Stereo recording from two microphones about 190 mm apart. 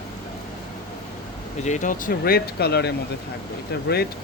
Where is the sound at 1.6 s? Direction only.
40° left (ahead or behind).